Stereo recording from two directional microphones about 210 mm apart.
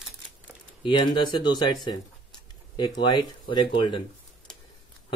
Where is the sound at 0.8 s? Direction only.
20° left (ahead or behind).